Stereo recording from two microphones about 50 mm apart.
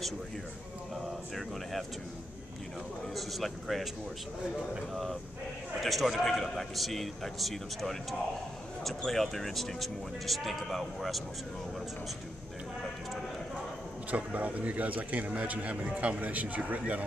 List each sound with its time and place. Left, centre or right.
1.3 s a man's voice: centre
3.2 s a man's voice: centre
5.8 s a man's voice: centre
14.1 s speech: right